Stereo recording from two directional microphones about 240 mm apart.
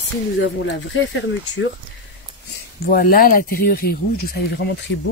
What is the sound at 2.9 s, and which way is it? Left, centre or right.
Speech, left.